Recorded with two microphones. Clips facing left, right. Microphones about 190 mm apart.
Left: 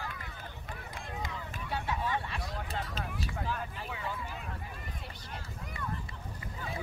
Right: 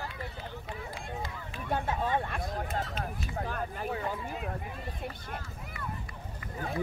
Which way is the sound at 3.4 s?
55° right (ahead or behind).